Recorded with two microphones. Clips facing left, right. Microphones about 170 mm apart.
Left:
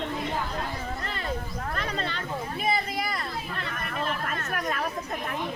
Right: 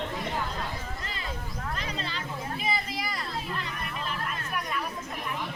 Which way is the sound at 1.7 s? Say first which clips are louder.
Left 5 dB; 50° left (ahead or behind).